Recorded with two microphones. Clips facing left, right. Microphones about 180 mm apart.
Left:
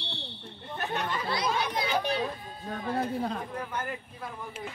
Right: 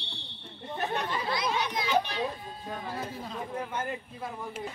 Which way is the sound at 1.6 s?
50° left (ahead or behind).